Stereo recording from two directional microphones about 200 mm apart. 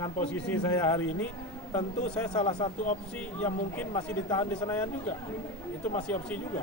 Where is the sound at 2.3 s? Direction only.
25° left (ahead or behind).